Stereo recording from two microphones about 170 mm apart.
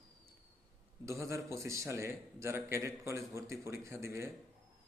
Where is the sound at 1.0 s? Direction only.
15° right (ahead or behind).